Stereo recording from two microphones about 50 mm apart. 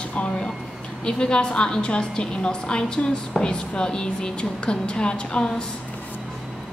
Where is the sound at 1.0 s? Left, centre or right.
Centre.